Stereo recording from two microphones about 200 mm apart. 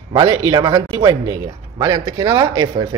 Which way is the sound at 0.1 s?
20° right (ahead or behind).